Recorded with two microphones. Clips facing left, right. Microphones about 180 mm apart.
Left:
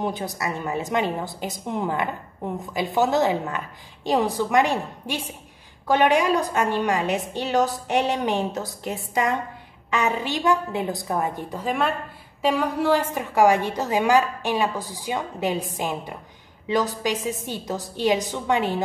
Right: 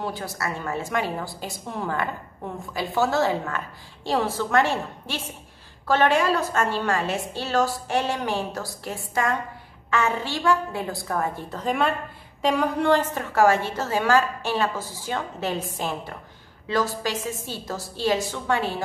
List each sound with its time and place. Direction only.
0.0 s a woman's voice: 20° left (ahead or behind)
11.6 s a woman's voice: centre (ahead or behind); by 18.8 s 20° left (ahead or behind)